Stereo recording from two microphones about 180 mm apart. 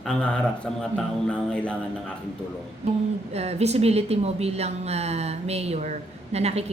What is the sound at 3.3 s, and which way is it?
Speech, 35° right (ahead or behind).